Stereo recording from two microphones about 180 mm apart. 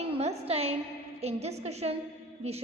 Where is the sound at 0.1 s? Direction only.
35° right (ahead or behind).